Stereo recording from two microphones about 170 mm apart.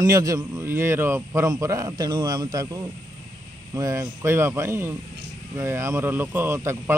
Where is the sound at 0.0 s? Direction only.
20° right (ahead or behind).